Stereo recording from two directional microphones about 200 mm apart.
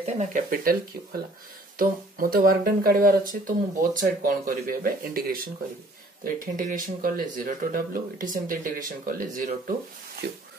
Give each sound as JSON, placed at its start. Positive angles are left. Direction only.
{"t": 0.0, "sound": "speech", "side_deg": -40}
{"t": 1.8, "sound": "speech", "side_deg": -45}
{"t": 10.2, "sound": "speech", "side_deg": -55}